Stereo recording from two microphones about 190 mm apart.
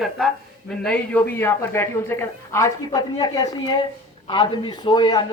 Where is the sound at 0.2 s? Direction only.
Centre (ahead or behind).